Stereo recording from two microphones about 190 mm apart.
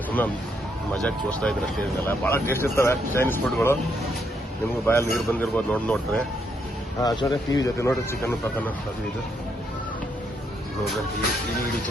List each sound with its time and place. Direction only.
0.9 s speech: 5° left (ahead or behind)
4.9 s speech: 15° left (ahead or behind)
7.0 s speech: 20° left (ahead or behind)